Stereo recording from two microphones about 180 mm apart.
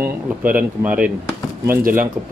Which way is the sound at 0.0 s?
10° right (ahead or behind).